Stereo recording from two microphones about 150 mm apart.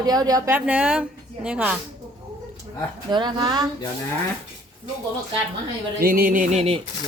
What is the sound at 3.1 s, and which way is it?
Speech, 30° right (ahead or behind).